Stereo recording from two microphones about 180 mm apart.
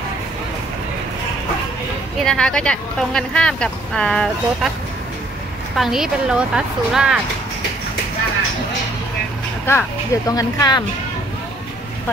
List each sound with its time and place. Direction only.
2.2 s speech: 5° left (ahead or behind)
5.8 s speech: 5° right (ahead or behind)
9.7 s speech: 15° left (ahead or behind)